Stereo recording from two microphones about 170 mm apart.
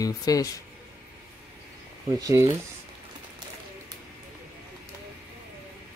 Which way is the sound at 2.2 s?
15° right (ahead or behind).